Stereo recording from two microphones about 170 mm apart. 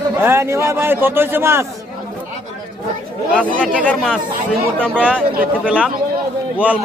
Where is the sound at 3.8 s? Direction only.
5° left (ahead or behind).